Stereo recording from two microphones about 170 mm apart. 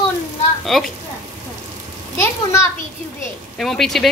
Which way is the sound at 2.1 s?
15° left (ahead or behind).